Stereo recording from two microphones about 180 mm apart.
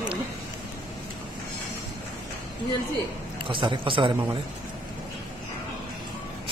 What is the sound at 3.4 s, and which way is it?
Speech, 25° right (ahead or behind).